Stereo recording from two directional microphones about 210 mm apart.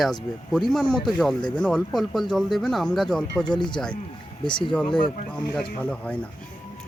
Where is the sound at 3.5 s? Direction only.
20° left (ahead or behind).